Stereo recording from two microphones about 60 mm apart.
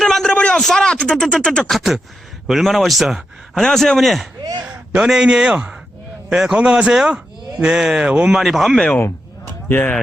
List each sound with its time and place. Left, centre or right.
0.0 s a sound: centre
0.5 s speech: centre
1.4 s a sound: centre
1.7 s speech: centre
3.5 s speech: centre
5.0 s speech: centre
9.6 s speech: left